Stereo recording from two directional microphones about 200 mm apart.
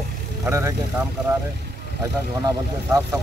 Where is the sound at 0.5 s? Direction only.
15° right (ahead or behind).